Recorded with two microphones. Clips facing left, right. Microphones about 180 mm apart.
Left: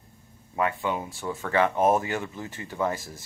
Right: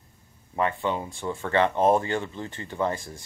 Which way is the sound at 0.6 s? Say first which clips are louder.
Right 1 dB; 10° left (ahead or behind).